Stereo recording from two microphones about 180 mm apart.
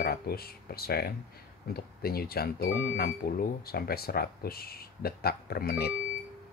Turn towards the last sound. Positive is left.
turn(degrees=60)  # may be behind; listen again after turning